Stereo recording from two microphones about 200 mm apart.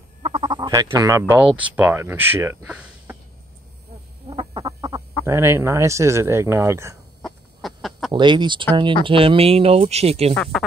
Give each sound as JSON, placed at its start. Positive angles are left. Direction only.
{"t": 0.2, "sound": "chicken", "side_deg": -20}
{"t": 1.3, "sound": "speech", "side_deg": -5}
{"t": 4.3, "sound": "frog", "side_deg": -25}
{"t": 5.2, "sound": "speech", "side_deg": -15}
{"t": 7.2, "sound": "chicken", "side_deg": 0}
{"t": 8.1, "sound": "speech", "side_deg": -25}
{"t": 10.3, "sound": "speech", "side_deg": 0}